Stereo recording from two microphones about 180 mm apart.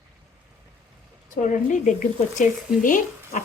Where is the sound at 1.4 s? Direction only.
45° left (ahead or behind).